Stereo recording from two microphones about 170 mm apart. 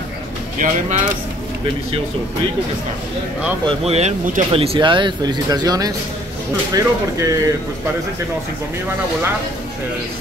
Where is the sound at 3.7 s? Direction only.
40° right (ahead or behind).